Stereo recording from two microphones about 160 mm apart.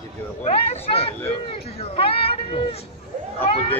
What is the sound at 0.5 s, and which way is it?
Speech, 40° left (ahead or behind).